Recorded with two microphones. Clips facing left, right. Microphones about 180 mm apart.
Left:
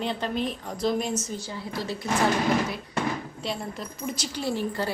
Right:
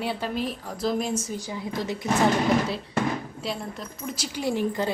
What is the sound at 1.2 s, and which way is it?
A woman's voice, 15° right (ahead or behind).